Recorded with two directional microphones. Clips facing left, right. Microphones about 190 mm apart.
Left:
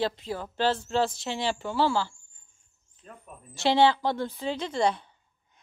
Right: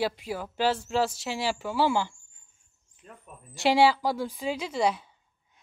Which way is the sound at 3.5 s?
15° right (ahead or behind).